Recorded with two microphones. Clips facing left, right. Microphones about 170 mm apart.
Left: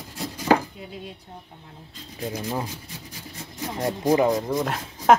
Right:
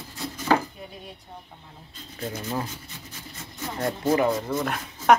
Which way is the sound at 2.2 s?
10° left (ahead or behind).